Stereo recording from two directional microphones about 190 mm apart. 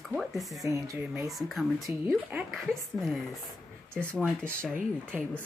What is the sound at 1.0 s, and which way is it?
Speech, centre (ahead or behind).